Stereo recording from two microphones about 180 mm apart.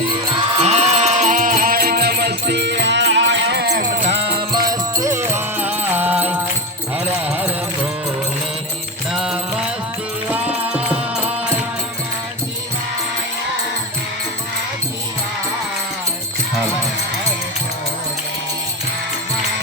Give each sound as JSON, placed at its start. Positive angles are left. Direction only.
{"t": 0.6, "sound": "music", "side_deg": -35}
{"t": 3.8, "sound": "music", "side_deg": -35}
{"t": 4.7, "sound": "music", "side_deg": -20}
{"t": 9.1, "sound": "music", "side_deg": -5}